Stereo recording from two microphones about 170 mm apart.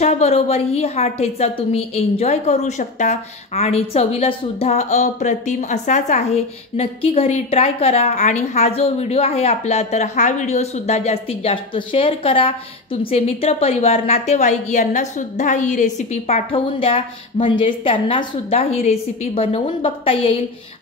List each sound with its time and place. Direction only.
0.0 s a woman's voice: 40° left (ahead or behind)